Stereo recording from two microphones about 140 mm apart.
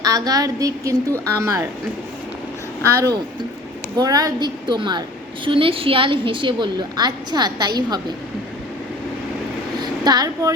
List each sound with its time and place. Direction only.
0.0 s a woman's voice: 25° right (ahead or behind)
2.8 s a woman's voice: 20° right (ahead or behind)
9.7 s a sound: 30° right (ahead or behind)